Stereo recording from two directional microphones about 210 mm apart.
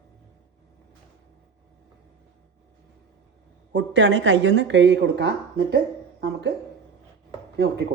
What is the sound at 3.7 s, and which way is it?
A woman's voice, 60° right (ahead or behind).